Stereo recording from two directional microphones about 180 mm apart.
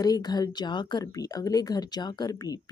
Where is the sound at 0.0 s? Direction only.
20° left (ahead or behind).